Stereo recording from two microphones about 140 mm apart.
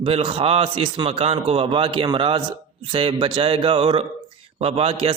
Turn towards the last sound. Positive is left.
turn(degrees=-45)  # may be behind; listen again after turning